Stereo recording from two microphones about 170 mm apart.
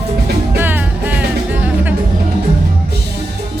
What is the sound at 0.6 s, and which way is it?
Music, 10° right (ahead or behind).